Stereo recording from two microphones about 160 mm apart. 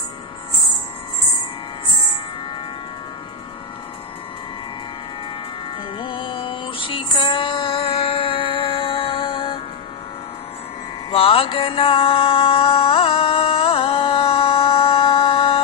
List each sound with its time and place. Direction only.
5.9 s music: 35° left (ahead or behind)
11.1 s music: 35° left (ahead or behind)